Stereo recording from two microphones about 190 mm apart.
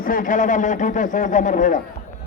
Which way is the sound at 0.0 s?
45° left (ahead or behind).